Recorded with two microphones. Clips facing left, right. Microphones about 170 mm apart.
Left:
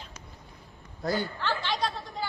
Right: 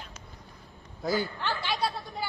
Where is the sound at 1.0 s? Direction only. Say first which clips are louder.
Right 1 dB; centre (ahead or behind).